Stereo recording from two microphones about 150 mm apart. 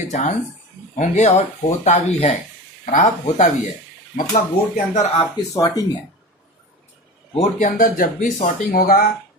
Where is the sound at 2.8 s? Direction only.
60° left (ahead or behind).